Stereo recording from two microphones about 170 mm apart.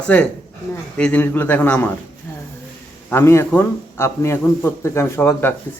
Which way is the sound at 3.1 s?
15° left (ahead or behind).